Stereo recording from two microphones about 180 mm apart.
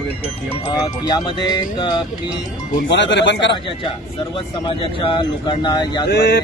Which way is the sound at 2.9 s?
80° left.